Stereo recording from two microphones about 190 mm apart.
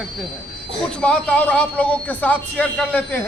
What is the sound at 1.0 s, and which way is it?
A man's voice, 5° left (ahead or behind).